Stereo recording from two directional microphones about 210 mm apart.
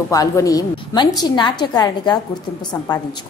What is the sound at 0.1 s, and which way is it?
A woman's voice, 15° left (ahead or behind).